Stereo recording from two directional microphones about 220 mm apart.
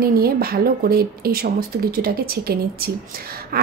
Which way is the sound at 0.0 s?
45° right (ahead or behind).